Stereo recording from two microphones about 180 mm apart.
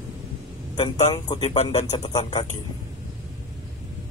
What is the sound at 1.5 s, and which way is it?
Speech, 35° left (ahead or behind).